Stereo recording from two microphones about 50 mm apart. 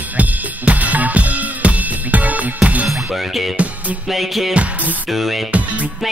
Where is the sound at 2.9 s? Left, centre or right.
Centre.